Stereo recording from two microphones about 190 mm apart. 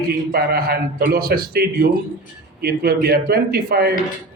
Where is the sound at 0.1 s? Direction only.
55° right (ahead or behind).